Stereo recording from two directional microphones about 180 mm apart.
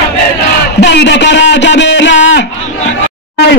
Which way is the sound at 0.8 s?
70° left (ahead or behind).